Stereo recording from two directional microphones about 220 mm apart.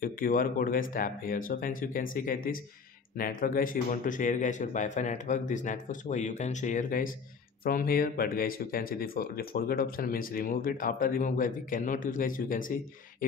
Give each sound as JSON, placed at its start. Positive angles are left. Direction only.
{"t": 0.0, "sound": "speech", "side_deg": 40}